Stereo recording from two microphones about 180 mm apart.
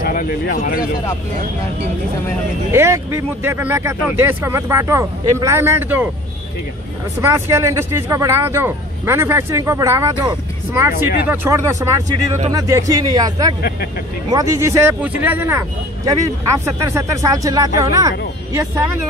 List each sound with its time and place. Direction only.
0.0 s speech: 50° left (ahead or behind)
2.7 s speech: 15° right (ahead or behind)
7.2 s speech: 15° right (ahead or behind)
13.6 s speech: 60° left (ahead or behind)
14.3 s speech: 15° right (ahead or behind)